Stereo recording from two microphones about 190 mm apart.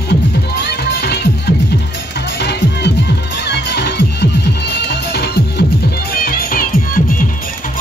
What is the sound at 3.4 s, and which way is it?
Music, 60° left (ahead or behind).